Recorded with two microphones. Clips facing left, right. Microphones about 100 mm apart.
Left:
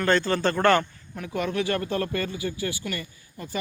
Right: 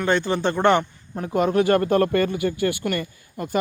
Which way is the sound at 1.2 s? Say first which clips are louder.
Right 7 dB; 40° right (ahead or behind).